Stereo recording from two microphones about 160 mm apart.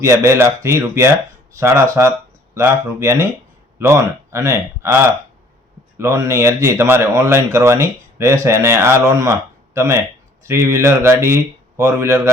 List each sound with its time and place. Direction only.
0.0 s speech: 15° right (ahead or behind)